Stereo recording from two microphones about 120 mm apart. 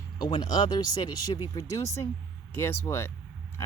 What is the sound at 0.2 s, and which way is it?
Speech, 35° left (ahead or behind).